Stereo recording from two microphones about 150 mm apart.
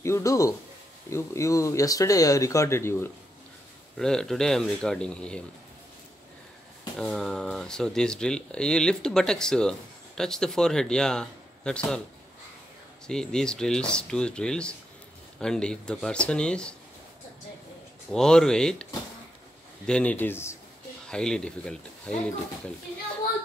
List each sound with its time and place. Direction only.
0.0 s speech: 20° left (ahead or behind)
3.9 s speech: 5° left (ahead or behind)
7.0 s speech: centre (ahead or behind)
13.0 s speech: 5° left (ahead or behind)
18.1 s speech: 5° left (ahead or behind)
19.9 s speech: 10° left (ahead or behind)
21.1 s speech: 5° left (ahead or behind)